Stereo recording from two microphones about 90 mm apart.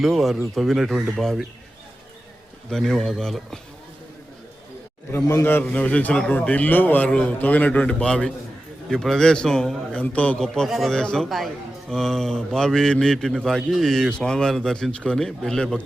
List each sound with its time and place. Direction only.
0.0 s a man's voice: centre (ahead or behind)
2.6 s a man's voice: 5° left (ahead or behind)
5.1 s a man's voice: 30° left (ahead or behind)
5.6 s a man's voice: 15° left (ahead or behind)